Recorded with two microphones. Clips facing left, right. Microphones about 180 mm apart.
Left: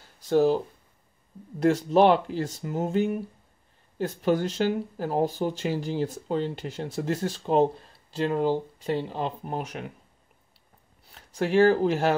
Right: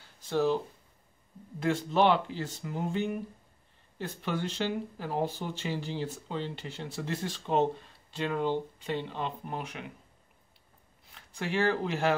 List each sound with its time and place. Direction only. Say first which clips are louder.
0.3 s speech: left 6 dB; 45° left (ahead or behind)
1.6 s speech: left 6 dB; 40° left (ahead or behind)
11.1 s speech: left 10 dB; 40° left (ahead or behind)